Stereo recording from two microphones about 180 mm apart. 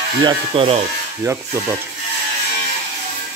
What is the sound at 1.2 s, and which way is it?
Speech, 15° right (ahead or behind).